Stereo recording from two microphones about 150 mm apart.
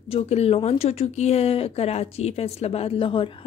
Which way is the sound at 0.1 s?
40° left (ahead or behind).